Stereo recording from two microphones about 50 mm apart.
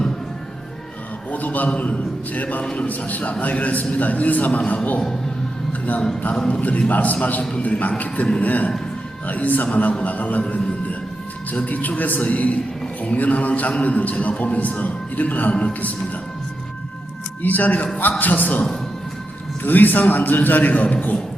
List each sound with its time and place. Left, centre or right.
1.3 s a man's voice: left
6.5 s a man's voice: left
17.4 s a man's voice: left
19.6 s a man's voice: left